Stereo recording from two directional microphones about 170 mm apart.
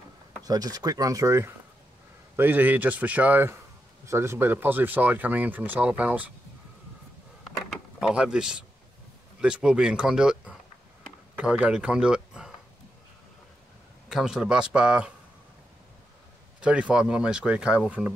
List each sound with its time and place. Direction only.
0.4 s speech: 20° right (ahead or behind)
8.0 s speech: 5° right (ahead or behind)
14.0 s speech: 5° right (ahead or behind)
16.6 s speech: 5° right (ahead or behind)